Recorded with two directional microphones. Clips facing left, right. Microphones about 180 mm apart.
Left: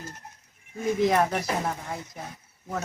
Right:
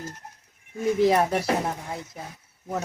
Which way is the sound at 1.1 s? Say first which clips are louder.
Right 1 dB; 10° right (ahead or behind).